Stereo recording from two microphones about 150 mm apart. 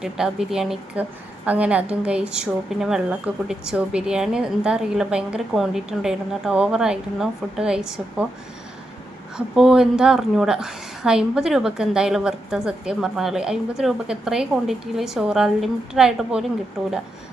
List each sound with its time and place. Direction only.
0.0 s a woman's voice: 5° right (ahead or behind)
9.6 s a woman's voice: 5° right (ahead or behind)